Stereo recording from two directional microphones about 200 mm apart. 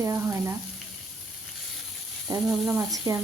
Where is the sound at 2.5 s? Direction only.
10° right (ahead or behind).